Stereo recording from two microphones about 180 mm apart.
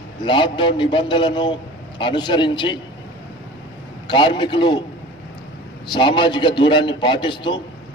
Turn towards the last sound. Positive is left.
turn(degrees=25)  # may be behind; listen again after turning